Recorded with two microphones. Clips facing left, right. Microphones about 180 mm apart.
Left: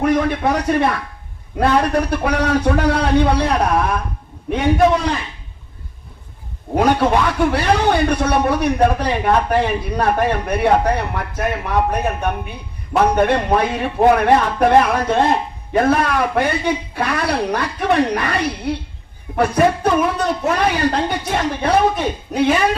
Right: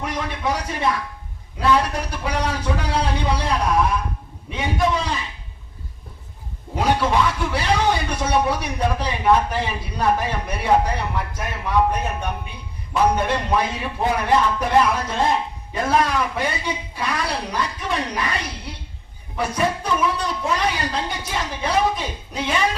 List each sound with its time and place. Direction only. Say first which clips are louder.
0.0 s speech: left 9 dB; 55° left (ahead or behind)
6.7 s speech: left 5 dB; 60° left (ahead or behind)